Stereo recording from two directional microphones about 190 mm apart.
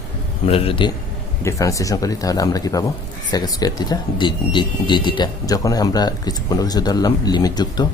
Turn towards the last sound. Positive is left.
turn(degrees=20)  # may be behind; listen again after turning